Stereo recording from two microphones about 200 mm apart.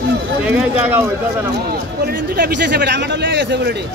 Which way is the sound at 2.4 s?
55° right (ahead or behind).